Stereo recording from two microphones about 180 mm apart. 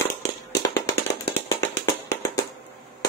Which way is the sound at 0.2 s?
15° left (ahead or behind).